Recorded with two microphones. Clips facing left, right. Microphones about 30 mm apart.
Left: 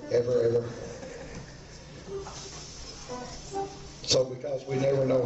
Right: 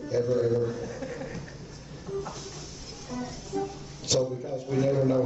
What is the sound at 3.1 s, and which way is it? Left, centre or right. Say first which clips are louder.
Music: right 4 dB; centre.